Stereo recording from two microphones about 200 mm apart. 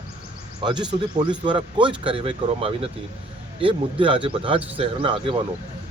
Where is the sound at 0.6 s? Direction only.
20° right (ahead or behind).